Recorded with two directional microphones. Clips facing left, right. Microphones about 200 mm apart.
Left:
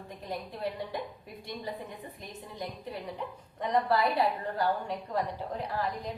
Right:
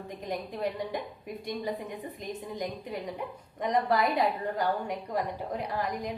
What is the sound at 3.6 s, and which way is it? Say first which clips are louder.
A woman's voice: right 1 dB; 15° right (ahead or behind).